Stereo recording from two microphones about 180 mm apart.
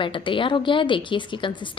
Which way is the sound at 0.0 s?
30° left (ahead or behind).